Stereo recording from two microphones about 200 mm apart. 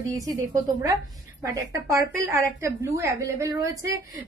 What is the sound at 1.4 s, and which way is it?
A woman's voice, 15° right (ahead or behind).